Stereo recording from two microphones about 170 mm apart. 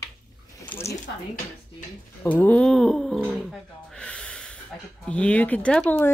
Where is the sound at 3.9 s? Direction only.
5° left (ahead or behind).